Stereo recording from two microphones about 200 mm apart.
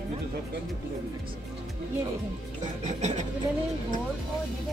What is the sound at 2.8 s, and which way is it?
Speech, 35° right (ahead or behind).